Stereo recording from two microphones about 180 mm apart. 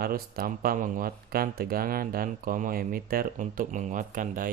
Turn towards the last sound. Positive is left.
turn(degrees=-50)  # may be behind; listen again after turning